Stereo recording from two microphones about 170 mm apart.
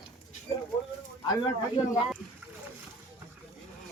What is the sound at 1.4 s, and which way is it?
Speech, 25° left (ahead or behind).